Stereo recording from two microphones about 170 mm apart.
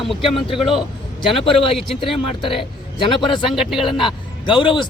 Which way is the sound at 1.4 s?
30° left (ahead or behind).